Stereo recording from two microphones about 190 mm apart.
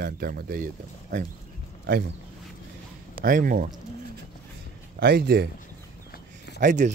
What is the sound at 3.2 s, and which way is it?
Speech, 45° right (ahead or behind).